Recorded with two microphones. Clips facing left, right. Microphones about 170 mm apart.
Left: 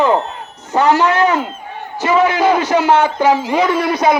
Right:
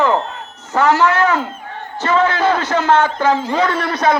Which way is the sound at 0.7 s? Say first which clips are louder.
Left 1 dB; 15° left (ahead or behind).